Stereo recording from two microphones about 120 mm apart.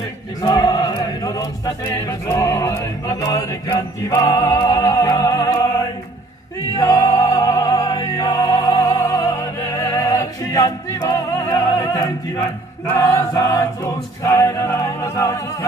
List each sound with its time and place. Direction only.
0.4 s music: 35° left (ahead or behind)
2.0 s chant: 25° left (ahead or behind)
2.8 s music: 30° left (ahead or behind)
6.8 s music: 30° left (ahead or behind)
12.9 s chant: 25° left (ahead or behind)
14.8 s music: 25° left (ahead or behind)